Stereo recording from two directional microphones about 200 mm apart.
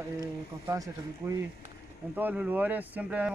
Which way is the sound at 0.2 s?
15° right (ahead or behind).